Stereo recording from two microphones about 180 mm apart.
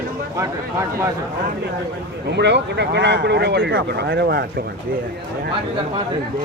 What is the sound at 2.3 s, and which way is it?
Speech, 70° right (ahead or behind).